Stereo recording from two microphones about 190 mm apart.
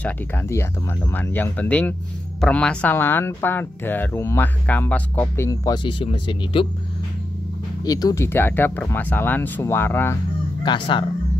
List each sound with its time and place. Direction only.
0.0 s speech: 10° left (ahead or behind); by 6.7 s 25° left (ahead or behind)
7.8 s speech: 20° left (ahead or behind)
10.6 s speech: 25° left (ahead or behind)